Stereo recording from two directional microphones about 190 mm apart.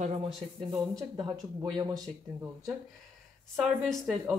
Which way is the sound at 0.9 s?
20° right (ahead or behind).